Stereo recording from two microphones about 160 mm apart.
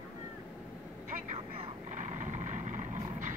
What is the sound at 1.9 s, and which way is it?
Vehicle, 50° right (ahead or behind).